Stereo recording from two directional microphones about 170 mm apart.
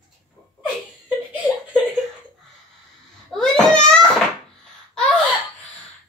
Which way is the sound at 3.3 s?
5° left (ahead or behind).